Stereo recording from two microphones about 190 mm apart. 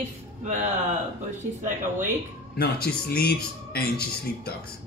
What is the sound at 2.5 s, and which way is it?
Speech, 55° left (ahead or behind).